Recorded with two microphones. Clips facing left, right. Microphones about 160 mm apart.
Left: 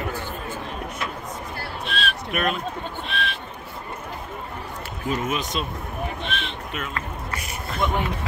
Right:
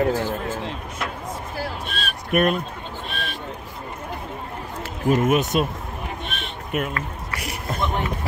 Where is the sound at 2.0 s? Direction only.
45° right (ahead or behind).